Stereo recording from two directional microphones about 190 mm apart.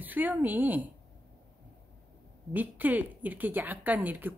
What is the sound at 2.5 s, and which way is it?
A woman's voice, 10° right (ahead or behind).